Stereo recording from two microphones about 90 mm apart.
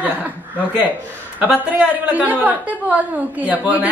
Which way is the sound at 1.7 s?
15° right (ahead or behind).